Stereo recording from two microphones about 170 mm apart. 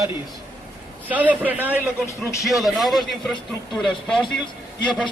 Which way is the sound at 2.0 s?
15° left (ahead or behind).